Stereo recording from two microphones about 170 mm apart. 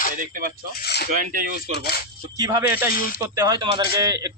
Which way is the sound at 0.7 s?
70° left (ahead or behind).